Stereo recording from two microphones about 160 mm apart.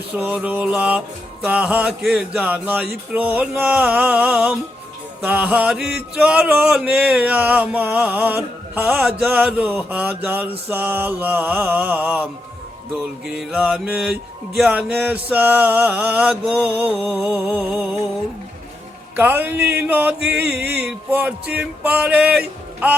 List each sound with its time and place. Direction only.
0.2 s mantra: 10° right (ahead or behind)
17.0 s a sound: centre (ahead or behind)
17.5 s mantra: 10° right (ahead or behind)
19.1 s mantra: 10° right (ahead or behind)
20.1 s music: 90° right
20.7 s mantra: 10° right (ahead or behind)